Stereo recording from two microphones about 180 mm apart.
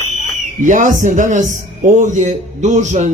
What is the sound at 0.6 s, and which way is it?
A man's voice, 45° right (ahead or behind).